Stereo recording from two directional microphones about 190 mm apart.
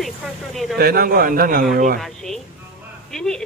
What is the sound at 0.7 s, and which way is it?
A man's voice, 55° right (ahead or behind).